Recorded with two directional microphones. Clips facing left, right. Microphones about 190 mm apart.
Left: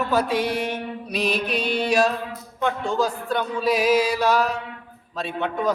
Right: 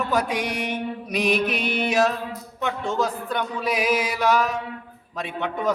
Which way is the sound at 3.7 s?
20° right (ahead or behind).